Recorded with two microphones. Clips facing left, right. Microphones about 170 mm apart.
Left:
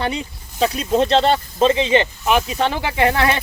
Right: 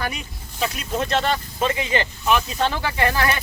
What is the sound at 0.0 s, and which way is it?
Speech, 25° left (ahead or behind).